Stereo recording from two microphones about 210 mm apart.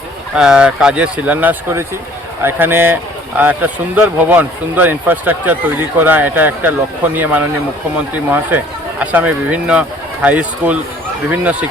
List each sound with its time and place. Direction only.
0.3 s a man's voice: 5° right (ahead or behind)